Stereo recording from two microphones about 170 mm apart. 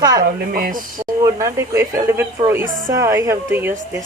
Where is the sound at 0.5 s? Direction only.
55° right (ahead or behind).